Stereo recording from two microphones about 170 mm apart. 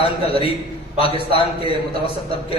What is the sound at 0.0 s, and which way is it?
A man's voice, 35° left (ahead or behind).